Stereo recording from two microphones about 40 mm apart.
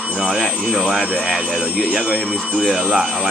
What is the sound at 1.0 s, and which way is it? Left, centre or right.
Speech, left.